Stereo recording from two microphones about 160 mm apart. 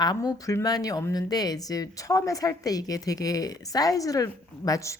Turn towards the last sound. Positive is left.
turn(degrees=20)  # may be behind; listen again after turning